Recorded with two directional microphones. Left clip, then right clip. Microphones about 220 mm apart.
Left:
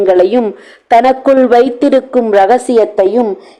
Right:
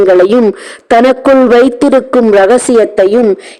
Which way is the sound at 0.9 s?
35° right (ahead or behind).